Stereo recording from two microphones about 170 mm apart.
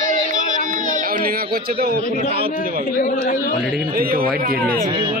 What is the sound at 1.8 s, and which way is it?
Speech, 65° right (ahead or behind).